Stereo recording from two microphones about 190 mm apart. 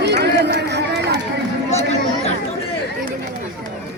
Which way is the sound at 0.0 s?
60° right (ahead or behind).